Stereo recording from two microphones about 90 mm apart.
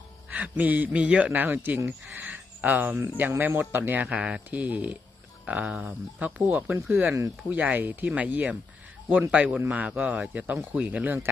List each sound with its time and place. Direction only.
0.3 s speech: 15° right (ahead or behind)